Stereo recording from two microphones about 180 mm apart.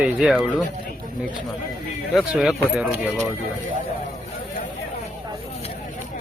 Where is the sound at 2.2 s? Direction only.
Centre (ahead or behind).